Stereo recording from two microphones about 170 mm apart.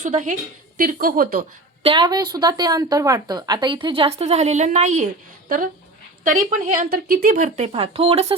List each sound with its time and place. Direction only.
0.0 s speech: 45° right (ahead or behind)
0.8 s speech: 55° right (ahead or behind)
1.8 s speech: 30° right (ahead or behind); by 5.0 s 45° right (ahead or behind)
6.2 s speech: 55° right (ahead or behind); by 8.4 s 35° right (ahead or behind)